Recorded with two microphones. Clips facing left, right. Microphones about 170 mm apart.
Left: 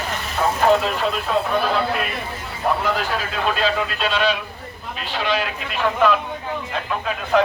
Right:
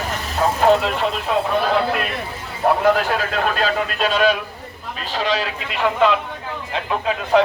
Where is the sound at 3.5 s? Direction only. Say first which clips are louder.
Right 1 dB; 45° right (ahead or behind).